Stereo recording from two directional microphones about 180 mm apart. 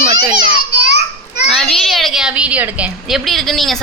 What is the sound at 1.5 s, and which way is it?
A child's voice, centre (ahead or behind).